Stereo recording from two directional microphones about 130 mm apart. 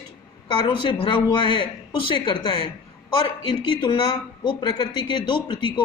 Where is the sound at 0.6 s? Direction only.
45° left (ahead or behind).